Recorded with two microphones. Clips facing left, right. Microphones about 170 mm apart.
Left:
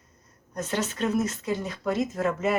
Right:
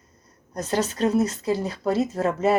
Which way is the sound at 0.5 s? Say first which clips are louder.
Right 4 dB; 35° right (ahead or behind).